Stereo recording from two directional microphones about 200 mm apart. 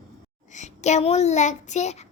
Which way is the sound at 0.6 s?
35° left (ahead or behind).